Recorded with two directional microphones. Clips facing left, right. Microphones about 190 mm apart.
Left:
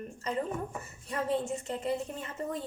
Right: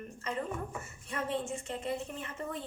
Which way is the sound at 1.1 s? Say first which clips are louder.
Left 4 dB; 40° left (ahead or behind).